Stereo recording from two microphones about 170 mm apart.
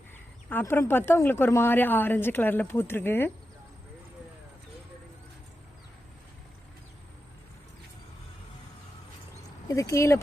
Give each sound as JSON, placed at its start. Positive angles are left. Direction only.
{"t": 0.5, "sound": "speech", "side_deg": 15}
{"t": 9.6, "sound": "speech", "side_deg": 20}